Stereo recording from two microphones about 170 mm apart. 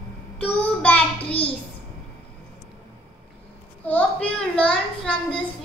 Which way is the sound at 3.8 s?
10° left (ahead or behind).